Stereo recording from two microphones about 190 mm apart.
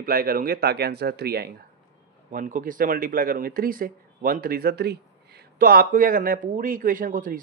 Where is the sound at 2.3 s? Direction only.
45° right (ahead or behind).